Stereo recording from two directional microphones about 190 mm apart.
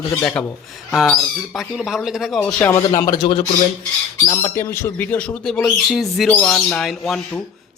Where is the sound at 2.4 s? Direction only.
10° left (ahead or behind); by 3.4 s 25° left (ahead or behind).